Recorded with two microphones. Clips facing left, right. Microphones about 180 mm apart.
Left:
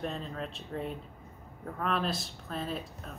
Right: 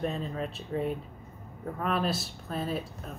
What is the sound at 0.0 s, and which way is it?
Speech, 5° right (ahead or behind).